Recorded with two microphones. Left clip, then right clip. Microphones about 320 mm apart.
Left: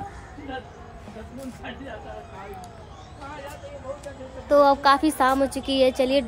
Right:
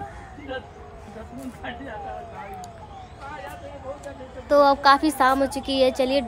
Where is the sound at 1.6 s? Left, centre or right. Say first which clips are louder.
Right 4 dB; centre.